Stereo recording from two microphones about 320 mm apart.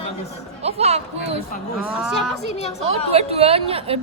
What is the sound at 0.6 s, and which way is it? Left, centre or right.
Speech, centre.